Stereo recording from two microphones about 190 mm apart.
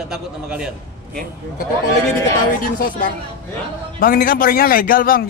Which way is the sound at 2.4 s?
45° left (ahead or behind).